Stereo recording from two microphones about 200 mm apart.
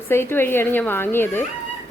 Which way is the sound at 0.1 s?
10° left (ahead or behind).